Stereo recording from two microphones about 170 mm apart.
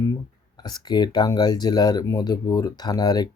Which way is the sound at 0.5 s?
25° left (ahead or behind).